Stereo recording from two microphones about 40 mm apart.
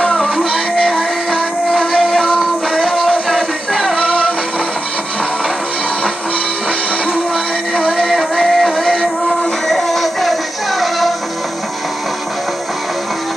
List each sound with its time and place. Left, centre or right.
0.0 s music: centre
1.7 s music: centre
4.0 s music: left
8.0 s music: centre